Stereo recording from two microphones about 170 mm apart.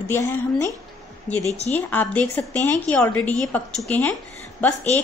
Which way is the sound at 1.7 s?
10° left (ahead or behind).